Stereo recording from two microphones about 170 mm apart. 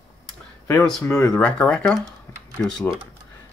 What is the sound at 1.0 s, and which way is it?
Speech, 20° left (ahead or behind).